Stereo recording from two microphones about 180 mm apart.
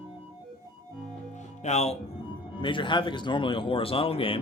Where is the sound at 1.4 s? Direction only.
40° left (ahead or behind).